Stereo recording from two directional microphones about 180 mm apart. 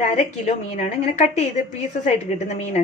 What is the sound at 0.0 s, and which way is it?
A woman's voice, 40° left (ahead or behind).